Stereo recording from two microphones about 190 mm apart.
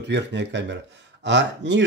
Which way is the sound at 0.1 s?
70° right (ahead or behind).